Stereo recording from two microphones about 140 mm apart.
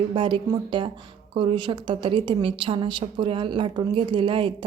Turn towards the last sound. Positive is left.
turn(degrees=-35)  # may be behind; listen again after turning